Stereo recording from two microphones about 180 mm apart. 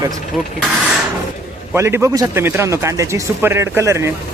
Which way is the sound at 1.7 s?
15° right (ahead or behind).